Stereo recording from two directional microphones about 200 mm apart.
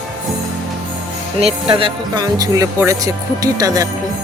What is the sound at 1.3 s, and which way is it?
Speech, 30° right (ahead or behind).